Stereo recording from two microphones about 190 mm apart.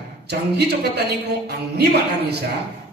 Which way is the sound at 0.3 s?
60° right (ahead or behind).